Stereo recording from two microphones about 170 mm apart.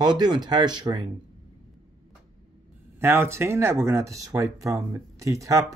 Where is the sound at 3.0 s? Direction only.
15° right (ahead or behind).